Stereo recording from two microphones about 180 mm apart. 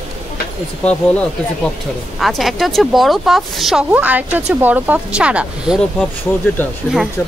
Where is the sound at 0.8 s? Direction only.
5° left (ahead or behind).